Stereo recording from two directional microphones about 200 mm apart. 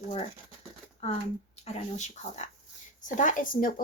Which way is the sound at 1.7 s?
35° left (ahead or behind).